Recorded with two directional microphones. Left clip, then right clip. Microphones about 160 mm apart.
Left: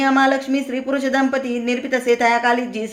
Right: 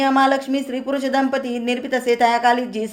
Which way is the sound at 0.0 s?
10° right (ahead or behind).